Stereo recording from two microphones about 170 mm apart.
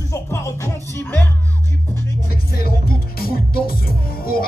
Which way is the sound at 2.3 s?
60° left (ahead or behind).